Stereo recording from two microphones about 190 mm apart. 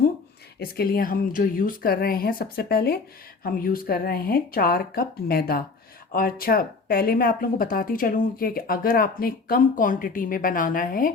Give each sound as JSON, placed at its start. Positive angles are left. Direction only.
{"t": 0.6, "sound": "speech", "side_deg": 50}